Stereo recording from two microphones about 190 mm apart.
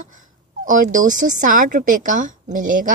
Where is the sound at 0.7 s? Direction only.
45° right (ahead or behind).